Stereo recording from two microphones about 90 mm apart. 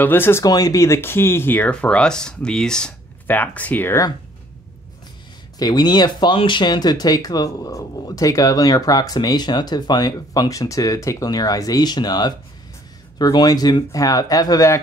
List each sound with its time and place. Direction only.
0.0 s speech: 25° left (ahead or behind)
0.4 s speech: 45° left (ahead or behind); by 3.9 s 20° left (ahead or behind)
5.6 s speech: 50° left (ahead or behind)
6.3 s speech: 65° left (ahead or behind); by 14.7 s 45° left (ahead or behind)